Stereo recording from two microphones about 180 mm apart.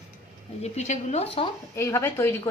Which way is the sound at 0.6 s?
40° left (ahead or behind).